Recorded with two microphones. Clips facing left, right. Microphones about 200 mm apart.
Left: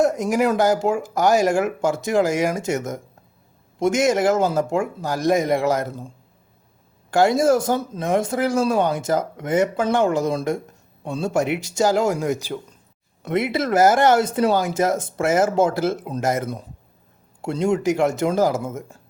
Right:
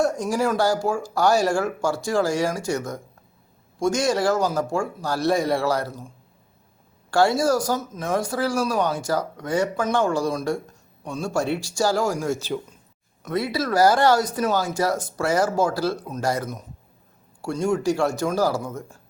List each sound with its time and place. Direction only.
0.0 s speech: 20° left (ahead or behind)
7.1 s speech: 20° left (ahead or behind)